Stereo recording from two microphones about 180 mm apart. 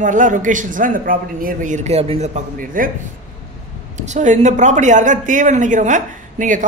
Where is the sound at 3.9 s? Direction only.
40° right (ahead or behind).